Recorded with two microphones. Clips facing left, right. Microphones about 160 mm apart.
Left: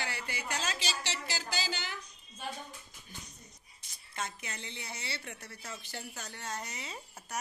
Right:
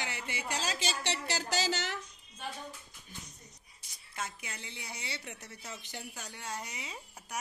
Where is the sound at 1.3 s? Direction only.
75° right (ahead or behind).